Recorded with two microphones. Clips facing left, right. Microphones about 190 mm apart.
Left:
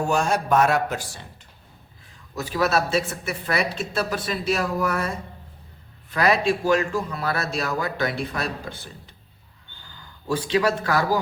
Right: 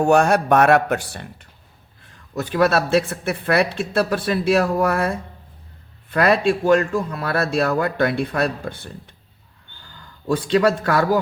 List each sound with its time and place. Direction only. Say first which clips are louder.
0.0 s speech: right 7 dB; 60° right (ahead or behind)
10.8 s speech: right 4 dB; 60° right (ahead or behind)